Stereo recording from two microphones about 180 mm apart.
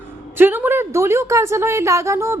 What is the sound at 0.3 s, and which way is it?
A woman's voice, 10° right (ahead or behind).